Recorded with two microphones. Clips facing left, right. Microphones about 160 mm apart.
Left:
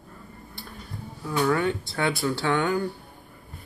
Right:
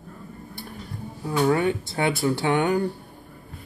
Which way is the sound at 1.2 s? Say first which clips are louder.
Right 2 dB; 30° right (ahead or behind).